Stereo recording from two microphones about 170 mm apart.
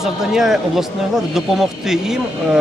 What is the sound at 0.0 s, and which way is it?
A man's voice, centre (ahead or behind).